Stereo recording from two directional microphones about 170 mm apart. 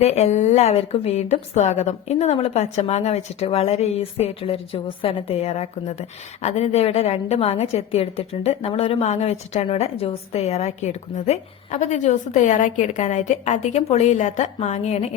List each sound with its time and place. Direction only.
0.0 s a woman's voice: 40° left (ahead or behind)